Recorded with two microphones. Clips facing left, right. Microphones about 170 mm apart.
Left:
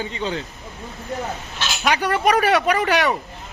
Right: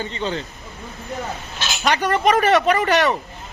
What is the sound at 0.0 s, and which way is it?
Speech, 10° left (ahead or behind).